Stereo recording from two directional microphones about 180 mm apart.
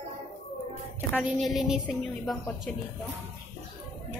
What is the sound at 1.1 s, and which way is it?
A woman's voice, centre (ahead or behind).